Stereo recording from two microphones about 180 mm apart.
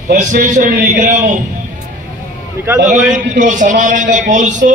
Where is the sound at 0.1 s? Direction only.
45° right (ahead or behind).